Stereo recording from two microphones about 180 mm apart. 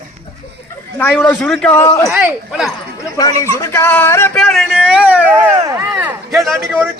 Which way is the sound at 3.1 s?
20° left (ahead or behind).